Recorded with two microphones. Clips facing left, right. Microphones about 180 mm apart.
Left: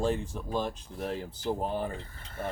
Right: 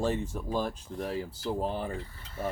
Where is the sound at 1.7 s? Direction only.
50° left (ahead or behind).